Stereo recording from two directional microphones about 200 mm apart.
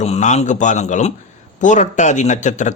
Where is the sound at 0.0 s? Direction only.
35° left (ahead or behind).